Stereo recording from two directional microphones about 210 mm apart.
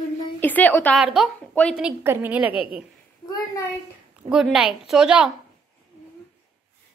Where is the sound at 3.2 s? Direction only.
15° left (ahead or behind).